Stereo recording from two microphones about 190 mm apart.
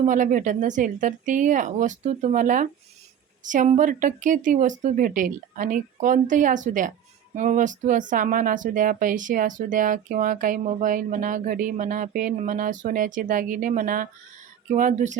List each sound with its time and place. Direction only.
0.0 s speech: 40° right (ahead or behind)